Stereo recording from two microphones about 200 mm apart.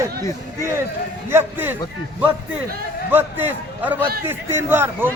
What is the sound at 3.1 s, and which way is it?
A man's voice, 10° right (ahead or behind).